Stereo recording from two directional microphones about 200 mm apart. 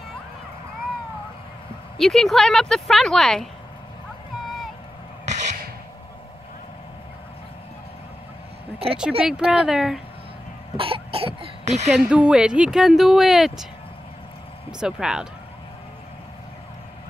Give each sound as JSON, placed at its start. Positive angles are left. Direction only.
{"t": 2.0, "sound": "speech", "side_deg": 0}
{"t": 5.2, "sound": "a sound", "side_deg": -35}
{"t": 9.2, "sound": "speech", "side_deg": -5}
{"t": 10.8, "sound": "cough", "side_deg": -30}
{"t": 11.9, "sound": "speech", "side_deg": -5}
{"t": 14.8, "sound": "speech", "side_deg": -5}